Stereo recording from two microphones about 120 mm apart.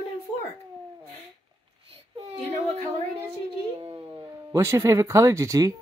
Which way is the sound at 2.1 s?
60° right (ahead or behind).